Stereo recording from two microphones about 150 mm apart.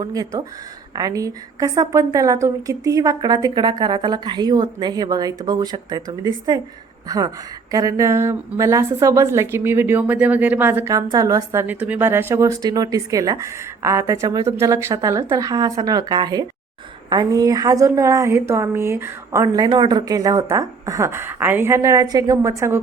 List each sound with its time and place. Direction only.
0.0 s a woman's voice: 25° right (ahead or behind)